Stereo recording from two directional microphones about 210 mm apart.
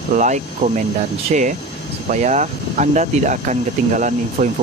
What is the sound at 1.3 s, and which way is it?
Speech, 35° right (ahead or behind).